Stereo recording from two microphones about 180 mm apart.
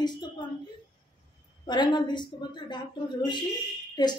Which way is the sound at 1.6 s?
25° left (ahead or behind).